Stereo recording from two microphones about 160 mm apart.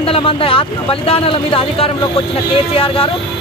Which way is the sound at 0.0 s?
35° left (ahead or behind).